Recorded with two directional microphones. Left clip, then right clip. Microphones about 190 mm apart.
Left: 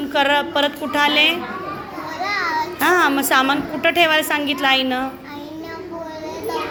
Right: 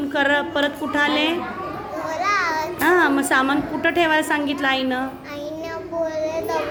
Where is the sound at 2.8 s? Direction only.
10° right (ahead or behind).